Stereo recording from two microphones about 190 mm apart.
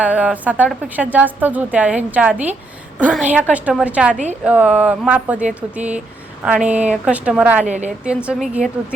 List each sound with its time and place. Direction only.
0.0 s a woman's voice: 5° right (ahead or behind)
7.6 s a woman's voice: 40° right (ahead or behind)
7.9 s a woman's voice: 5° right (ahead or behind)